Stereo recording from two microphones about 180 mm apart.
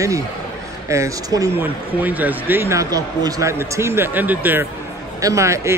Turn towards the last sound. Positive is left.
turn(degrees=-15)  # may be behind; listen again after turning